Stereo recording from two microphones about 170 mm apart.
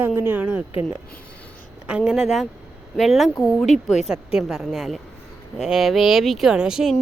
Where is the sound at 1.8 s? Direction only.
5° right (ahead or behind).